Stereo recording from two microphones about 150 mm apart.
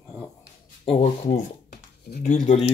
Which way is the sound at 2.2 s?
50° left (ahead or behind).